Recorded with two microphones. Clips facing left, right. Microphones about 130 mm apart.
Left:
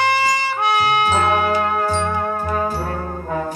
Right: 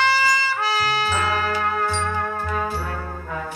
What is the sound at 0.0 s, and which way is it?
Trumpet, 20° left (ahead or behind).